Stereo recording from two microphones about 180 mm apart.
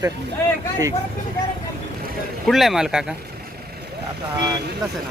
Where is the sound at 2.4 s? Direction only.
Centre (ahead or behind).